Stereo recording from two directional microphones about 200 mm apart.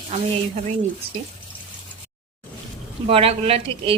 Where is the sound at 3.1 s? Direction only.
30° right (ahead or behind).